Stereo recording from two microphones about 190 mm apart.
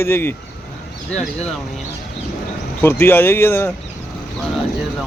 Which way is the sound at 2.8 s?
10° left (ahead or behind).